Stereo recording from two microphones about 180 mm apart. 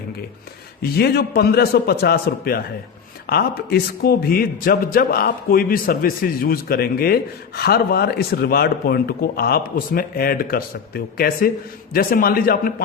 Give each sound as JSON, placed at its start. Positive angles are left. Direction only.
{"t": 0.8, "sound": "a man's voice", "side_deg": 60}